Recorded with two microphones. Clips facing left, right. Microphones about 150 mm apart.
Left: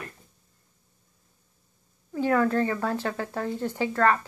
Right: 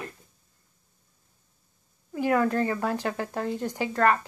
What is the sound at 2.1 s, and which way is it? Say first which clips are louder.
Speech: left 1 dB; 15° right (ahead or behind).